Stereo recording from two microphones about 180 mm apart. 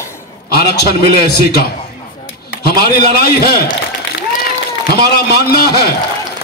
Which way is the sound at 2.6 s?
60° left (ahead or behind).